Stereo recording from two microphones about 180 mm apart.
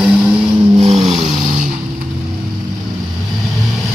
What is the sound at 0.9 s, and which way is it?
Vehicle, 35° right (ahead or behind).